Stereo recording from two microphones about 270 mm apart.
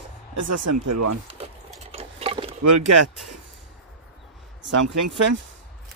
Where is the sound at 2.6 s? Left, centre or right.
Right.